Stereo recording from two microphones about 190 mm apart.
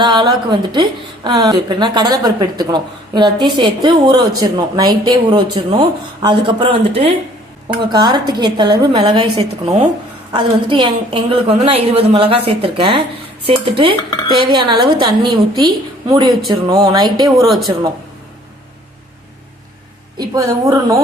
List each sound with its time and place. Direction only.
0.0 s a woman's voice: 25° right (ahead or behind)
17.4 s speech: centre (ahead or behind)
20.1 s a woman's voice: 15° right (ahead or behind)